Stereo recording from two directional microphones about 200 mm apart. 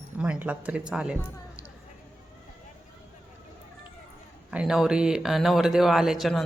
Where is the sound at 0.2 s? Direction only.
5° right (ahead or behind).